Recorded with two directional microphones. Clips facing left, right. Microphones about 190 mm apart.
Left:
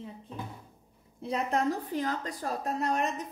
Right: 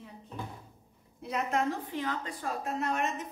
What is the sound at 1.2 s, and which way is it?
A woman's voice, 35° left (ahead or behind).